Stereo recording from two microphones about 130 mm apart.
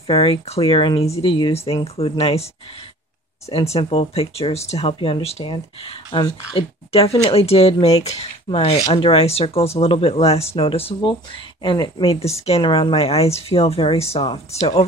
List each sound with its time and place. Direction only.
0.0 s speech: 45° left (ahead or behind)
3.7 s speech: 50° left (ahead or behind)
12.6 s speech: 40° left (ahead or behind)